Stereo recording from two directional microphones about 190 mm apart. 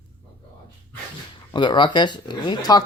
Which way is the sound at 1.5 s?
25° left (ahead or behind).